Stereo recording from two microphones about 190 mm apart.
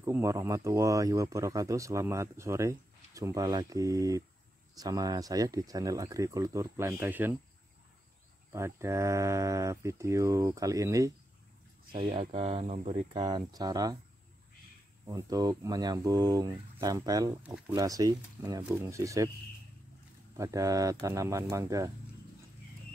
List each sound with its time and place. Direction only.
0.0 s speech: 15° right (ahead or behind)
8.5 s speech: 15° right (ahead or behind)
11.9 s speech: 30° right (ahead or behind)
13.1 s speech: 20° right (ahead or behind)
15.0 s speech: 20° right (ahead or behind)
17.4 s speech: 5° right (ahead or behind)
17.7 s speech: 20° right (ahead or behind)
20.3 s speech: 15° right (ahead or behind)